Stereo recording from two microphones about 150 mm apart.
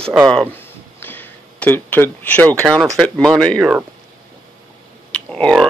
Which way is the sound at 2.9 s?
5° left (ahead or behind).